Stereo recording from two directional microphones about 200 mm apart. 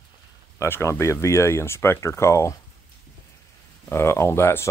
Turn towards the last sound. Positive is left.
turn(degrees=10)  # may be behind; listen again after turning